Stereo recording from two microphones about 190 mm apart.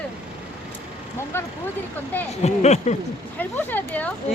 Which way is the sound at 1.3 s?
10° left (ahead or behind).